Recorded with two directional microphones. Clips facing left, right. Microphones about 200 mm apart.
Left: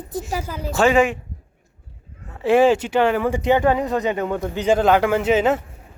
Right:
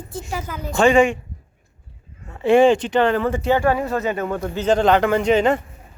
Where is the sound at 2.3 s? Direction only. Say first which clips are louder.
Right 1 dB; 5° left (ahead or behind).